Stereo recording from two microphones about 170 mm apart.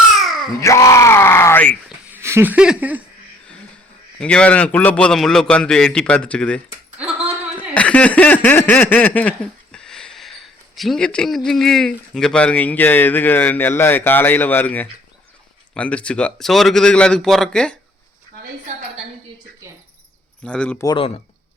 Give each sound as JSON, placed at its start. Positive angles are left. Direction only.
{"t": 0.2, "sound": "babbling", "side_deg": 0}
{"t": 0.6, "sound": "speech", "side_deg": 20}
{"t": 2.0, "sound": "a sound", "side_deg": -15}
{"t": 4.2, "sound": "a man's voice", "side_deg": 5}
{"t": 7.7, "sound": "a sound", "side_deg": 5}
{"t": 15.7, "sound": "a man's voice", "side_deg": 5}
{"t": 20.4, "sound": "a man's voice", "side_deg": 5}
{"t": 20.8, "sound": "speech", "side_deg": 30}